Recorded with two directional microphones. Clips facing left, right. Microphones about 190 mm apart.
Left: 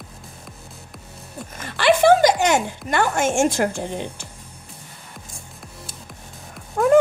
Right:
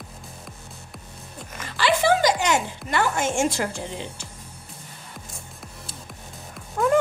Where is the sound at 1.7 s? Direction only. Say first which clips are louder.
Left 6 dB; 55° left (ahead or behind).